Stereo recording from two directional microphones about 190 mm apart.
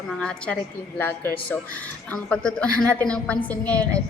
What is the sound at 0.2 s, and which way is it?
A woman's voice, 5° left (ahead or behind).